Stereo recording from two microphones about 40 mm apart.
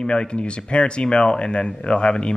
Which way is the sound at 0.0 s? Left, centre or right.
Left.